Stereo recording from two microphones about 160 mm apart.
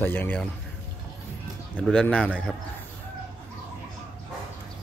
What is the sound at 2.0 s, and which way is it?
Speech, 5° left (ahead or behind).